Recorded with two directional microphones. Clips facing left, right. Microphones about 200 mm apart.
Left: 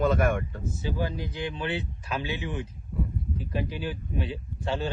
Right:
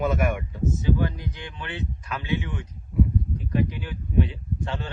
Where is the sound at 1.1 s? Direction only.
30° left (ahead or behind).